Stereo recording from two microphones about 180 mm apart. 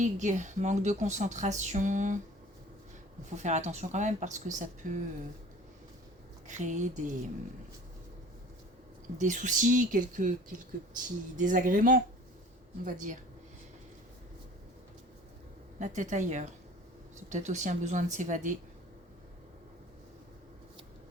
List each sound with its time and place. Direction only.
0.0 s a woman's voice: 45° right (ahead or behind)
3.2 s a woman's voice: 40° right (ahead or behind)
6.5 s speech: 45° right (ahead or behind)
9.1 s speech: 45° right (ahead or behind)
15.8 s speech: 45° right (ahead or behind)